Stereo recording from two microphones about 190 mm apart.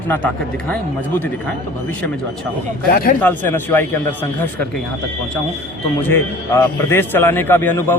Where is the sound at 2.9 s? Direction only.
50° left (ahead or behind).